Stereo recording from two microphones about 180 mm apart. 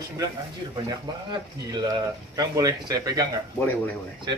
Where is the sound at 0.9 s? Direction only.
25° right (ahead or behind).